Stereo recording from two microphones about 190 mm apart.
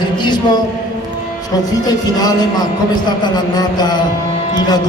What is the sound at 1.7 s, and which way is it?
A man's voice, 20° left (ahead or behind).